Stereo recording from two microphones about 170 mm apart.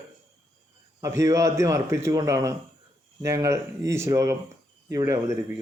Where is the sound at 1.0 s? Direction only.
20° right (ahead or behind).